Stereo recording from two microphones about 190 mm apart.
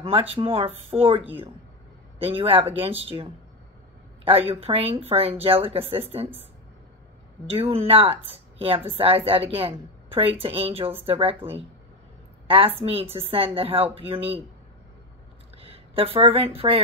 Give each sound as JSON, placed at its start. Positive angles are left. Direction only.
{"t": 0.0, "sound": "a woman's voice", "side_deg": -30}
{"t": 7.4, "sound": "a woman's voice", "side_deg": -30}
{"t": 12.4, "sound": "a woman's voice", "side_deg": -30}
{"t": 15.5, "sound": "speech", "side_deg": -30}